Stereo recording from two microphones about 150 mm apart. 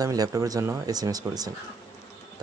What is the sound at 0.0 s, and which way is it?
Speech, 25° right (ahead or behind).